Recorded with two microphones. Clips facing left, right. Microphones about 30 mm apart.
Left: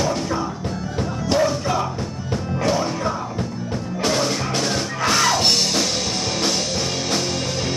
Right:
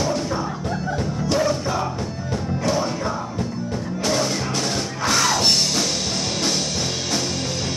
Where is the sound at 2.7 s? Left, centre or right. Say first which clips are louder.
Left 1 dB; centre.